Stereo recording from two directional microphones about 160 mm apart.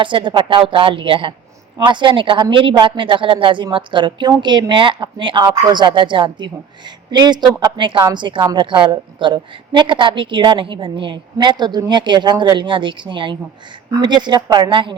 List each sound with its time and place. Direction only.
0.0 s speech: 30° right (ahead or behind)